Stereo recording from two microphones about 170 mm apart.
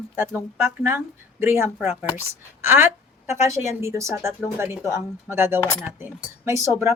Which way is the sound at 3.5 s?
15° right (ahead or behind).